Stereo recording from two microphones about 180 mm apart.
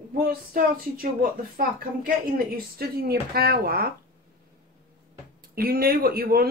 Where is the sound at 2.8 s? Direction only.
60° right (ahead or behind).